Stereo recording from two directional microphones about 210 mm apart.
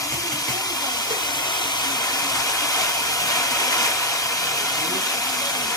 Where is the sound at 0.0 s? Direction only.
15° left (ahead or behind).